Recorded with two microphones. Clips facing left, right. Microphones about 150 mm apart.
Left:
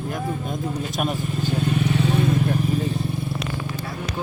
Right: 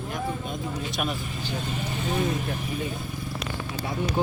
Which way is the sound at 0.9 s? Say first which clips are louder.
Left 5 dB; 45° left (ahead or behind).